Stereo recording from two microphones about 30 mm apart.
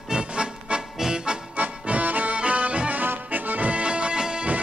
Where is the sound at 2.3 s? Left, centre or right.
Right.